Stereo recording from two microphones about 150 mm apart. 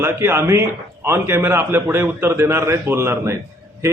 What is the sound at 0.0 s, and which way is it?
A man's voice, 15° right (ahead or behind).